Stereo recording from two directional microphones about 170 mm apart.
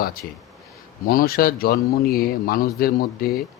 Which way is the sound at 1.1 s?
60° left (ahead or behind).